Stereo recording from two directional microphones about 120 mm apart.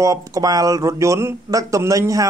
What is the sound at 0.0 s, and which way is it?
Speech, 30° right (ahead or behind).